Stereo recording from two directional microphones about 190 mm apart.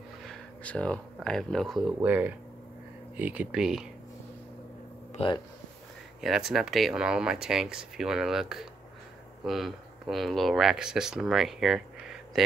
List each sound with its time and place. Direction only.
0.2 s speech: 5° left (ahead or behind)
5.1 s speech: 25° left (ahead or behind)
6.2 s speech: centre (ahead or behind)